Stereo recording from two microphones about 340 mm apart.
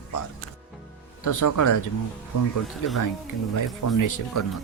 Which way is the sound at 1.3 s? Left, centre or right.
Left.